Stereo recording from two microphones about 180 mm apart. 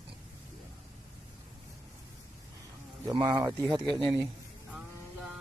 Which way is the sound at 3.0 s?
20° right (ahead or behind).